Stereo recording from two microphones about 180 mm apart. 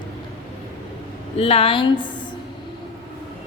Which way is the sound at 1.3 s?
35° left (ahead or behind).